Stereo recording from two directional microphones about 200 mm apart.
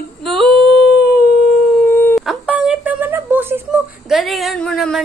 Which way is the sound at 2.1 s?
Centre (ahead or behind).